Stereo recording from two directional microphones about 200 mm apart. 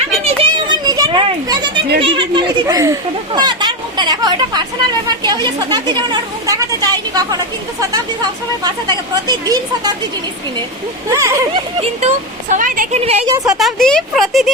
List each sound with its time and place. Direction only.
0.3 s a sound: 25° right (ahead or behind)
2.0 s speech: 25° right (ahead or behind)
11.1 s speech: 15° right (ahead or behind)
11.8 s speech: 35° right (ahead or behind)
13.1 s speech: 20° right (ahead or behind)
13.5 s speech: centre (ahead or behind)